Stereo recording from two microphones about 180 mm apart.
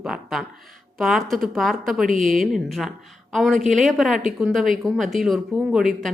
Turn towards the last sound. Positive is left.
turn(degrees=0)  # may be behind; listen again after turning